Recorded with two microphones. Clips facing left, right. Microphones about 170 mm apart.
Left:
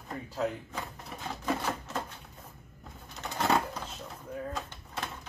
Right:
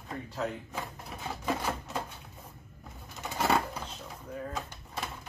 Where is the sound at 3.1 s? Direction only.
10° right (ahead or behind).